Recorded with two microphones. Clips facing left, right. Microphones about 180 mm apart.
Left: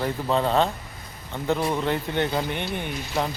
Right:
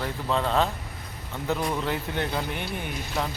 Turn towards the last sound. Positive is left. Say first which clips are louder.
# left 3 dB
turn(degrees=0)  # may be behind; listen again after turning